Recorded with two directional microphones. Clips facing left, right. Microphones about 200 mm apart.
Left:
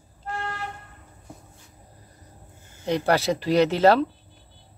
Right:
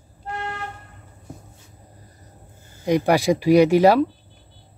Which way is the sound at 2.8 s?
10° right (ahead or behind).